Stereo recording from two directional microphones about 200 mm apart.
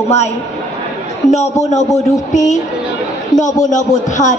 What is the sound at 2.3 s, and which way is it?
Speech, 35° left (ahead or behind).